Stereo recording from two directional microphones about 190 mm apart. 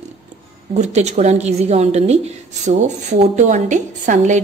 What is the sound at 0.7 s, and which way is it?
A woman's voice, 40° right (ahead or behind).